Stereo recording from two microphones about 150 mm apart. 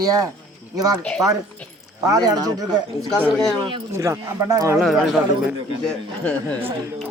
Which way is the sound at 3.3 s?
5° left (ahead or behind).